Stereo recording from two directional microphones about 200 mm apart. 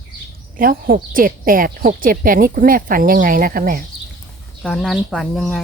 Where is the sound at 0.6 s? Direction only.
45° right (ahead or behind).